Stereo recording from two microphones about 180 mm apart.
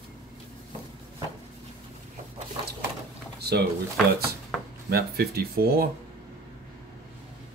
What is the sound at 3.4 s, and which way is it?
Drawer open or close, 65° right (ahead or behind).